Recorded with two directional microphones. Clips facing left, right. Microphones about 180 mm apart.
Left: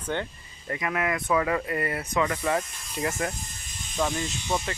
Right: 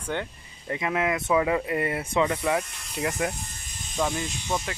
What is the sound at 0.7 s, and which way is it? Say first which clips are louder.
Speech: right 2 dB; 20° right (ahead or behind).